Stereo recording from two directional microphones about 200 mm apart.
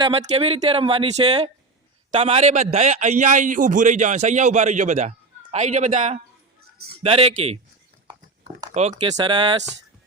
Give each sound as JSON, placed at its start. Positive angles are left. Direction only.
{"t": 0.0, "sound": "a man's voice", "side_deg": -30}
{"t": 8.7, "sound": "a man's voice", "side_deg": -35}